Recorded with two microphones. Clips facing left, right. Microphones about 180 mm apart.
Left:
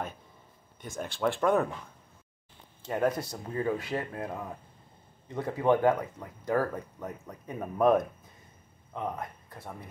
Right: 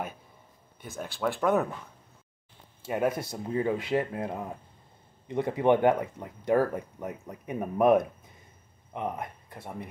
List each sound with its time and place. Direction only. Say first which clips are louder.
0.7 s speech: left 1 dB; 5° right (ahead or behind)
2.8 s speech: even; 10° right (ahead or behind)